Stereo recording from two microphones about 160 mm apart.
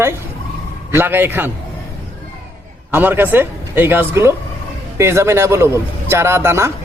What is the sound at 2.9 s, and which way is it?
A man's voice, 10° right (ahead or behind).